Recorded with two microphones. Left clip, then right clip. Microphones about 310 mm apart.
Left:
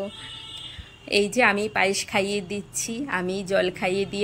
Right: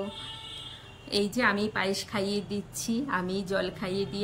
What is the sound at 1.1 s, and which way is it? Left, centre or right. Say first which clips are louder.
A woman's voice: left 7 dB; centre.